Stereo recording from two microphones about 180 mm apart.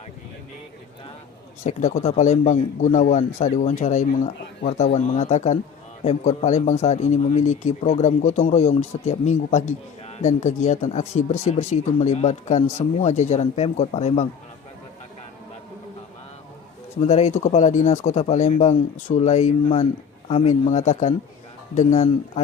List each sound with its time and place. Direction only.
1.6 s speech: 40° left (ahead or behind)
17.0 s speech: 40° left (ahead or behind)